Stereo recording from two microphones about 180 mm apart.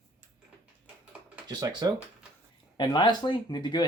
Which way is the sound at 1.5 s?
20° right (ahead or behind).